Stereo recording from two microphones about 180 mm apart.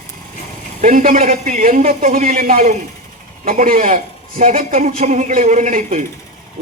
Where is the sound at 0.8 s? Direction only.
50° right (ahead or behind).